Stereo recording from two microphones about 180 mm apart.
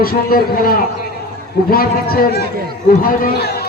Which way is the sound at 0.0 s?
55° left (ahead or behind).